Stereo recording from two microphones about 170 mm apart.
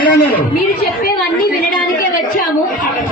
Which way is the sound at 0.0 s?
60° left (ahead or behind).